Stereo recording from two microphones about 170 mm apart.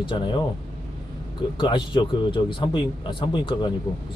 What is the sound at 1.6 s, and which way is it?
A man's voice, 30° left (ahead or behind).